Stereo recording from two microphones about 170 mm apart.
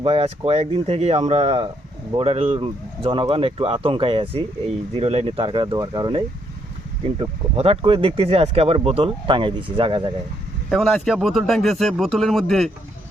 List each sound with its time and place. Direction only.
0.0 s speech: 35° right (ahead or behind)
10.7 s speech: centre (ahead or behind)